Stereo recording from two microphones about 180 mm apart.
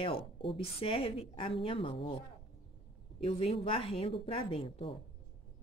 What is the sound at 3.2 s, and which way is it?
Speech, 30° left (ahead or behind).